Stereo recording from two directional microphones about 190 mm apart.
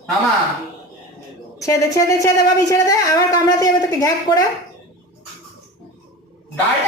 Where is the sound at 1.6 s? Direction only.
15° left (ahead or behind).